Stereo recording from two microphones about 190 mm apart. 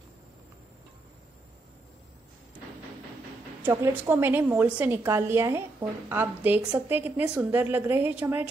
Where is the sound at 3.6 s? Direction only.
10° right (ahead or behind).